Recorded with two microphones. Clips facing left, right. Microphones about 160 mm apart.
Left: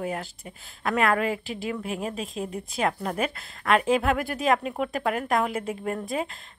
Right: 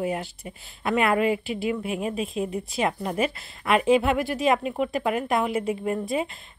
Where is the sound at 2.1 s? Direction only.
5° right (ahead or behind).